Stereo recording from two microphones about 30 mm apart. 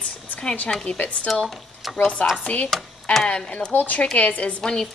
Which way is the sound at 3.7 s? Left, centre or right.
Left.